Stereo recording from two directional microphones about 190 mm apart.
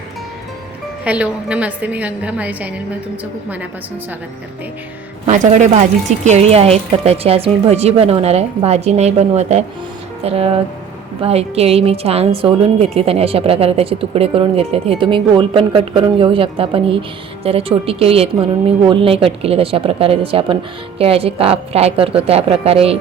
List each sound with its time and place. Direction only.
1.0 s a woman's voice: 5° right (ahead or behind)
5.3 s a woman's voice: 40° right (ahead or behind)